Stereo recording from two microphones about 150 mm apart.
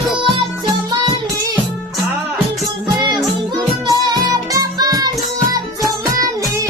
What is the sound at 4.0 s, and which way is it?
Music, 25° right (ahead or behind).